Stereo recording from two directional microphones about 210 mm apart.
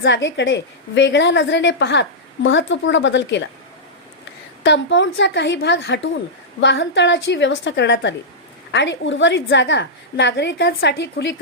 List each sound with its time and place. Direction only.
0.0 s a woman's voice: 60° left (ahead or behind)
4.6 s a woman's voice: 60° left (ahead or behind)